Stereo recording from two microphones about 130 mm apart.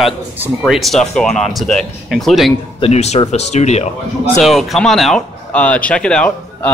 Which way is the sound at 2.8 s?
55° left (ahead or behind).